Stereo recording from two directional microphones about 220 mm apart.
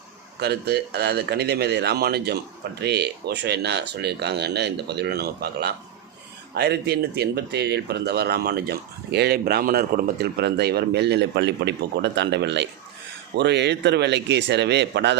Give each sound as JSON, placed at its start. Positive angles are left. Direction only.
{"t": 0.3, "sound": "a man's voice", "side_deg": -50}